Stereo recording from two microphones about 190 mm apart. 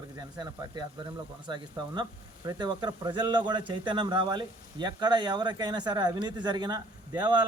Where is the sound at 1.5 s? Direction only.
25° right (ahead or behind).